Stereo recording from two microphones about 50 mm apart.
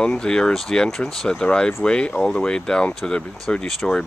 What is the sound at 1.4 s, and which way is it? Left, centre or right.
Speech, centre.